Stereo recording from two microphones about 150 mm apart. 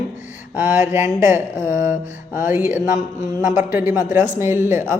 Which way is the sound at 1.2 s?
20° right (ahead or behind).